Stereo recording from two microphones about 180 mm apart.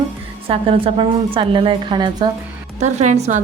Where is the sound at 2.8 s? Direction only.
40° right (ahead or behind).